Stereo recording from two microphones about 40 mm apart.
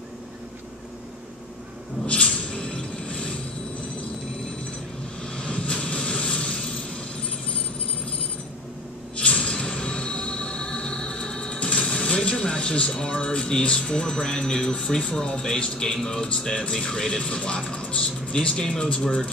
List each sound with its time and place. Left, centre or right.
2.2 s a sound: left
5.3 s vehicle: left
9.2 s music: left
15.0 s a man's voice: centre